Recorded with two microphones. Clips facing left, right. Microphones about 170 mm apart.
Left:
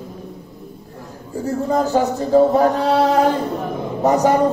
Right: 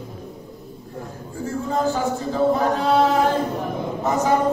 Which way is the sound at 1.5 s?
40° left (ahead or behind).